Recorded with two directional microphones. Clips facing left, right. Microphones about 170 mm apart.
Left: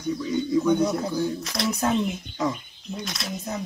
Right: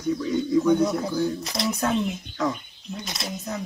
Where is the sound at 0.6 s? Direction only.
Centre (ahead or behind).